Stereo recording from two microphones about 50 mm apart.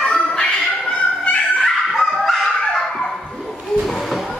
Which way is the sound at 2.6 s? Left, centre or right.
Centre.